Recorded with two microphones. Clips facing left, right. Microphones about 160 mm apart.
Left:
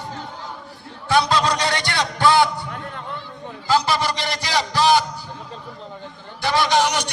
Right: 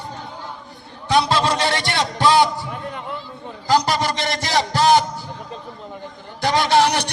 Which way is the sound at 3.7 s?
40° right (ahead or behind).